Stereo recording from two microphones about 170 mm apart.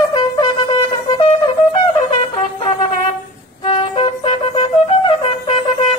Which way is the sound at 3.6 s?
30° left (ahead or behind).